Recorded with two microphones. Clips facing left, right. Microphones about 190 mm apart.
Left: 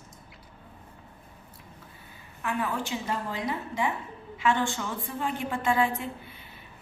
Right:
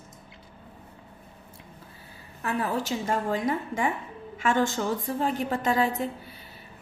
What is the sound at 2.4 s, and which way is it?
A woman's voice, 35° right (ahead or behind).